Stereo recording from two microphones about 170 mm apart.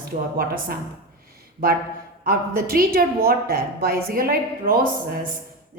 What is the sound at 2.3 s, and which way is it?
A woman's voice, 60° right (ahead or behind).